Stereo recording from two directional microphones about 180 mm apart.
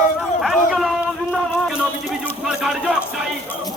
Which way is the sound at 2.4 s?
Centre (ahead or behind).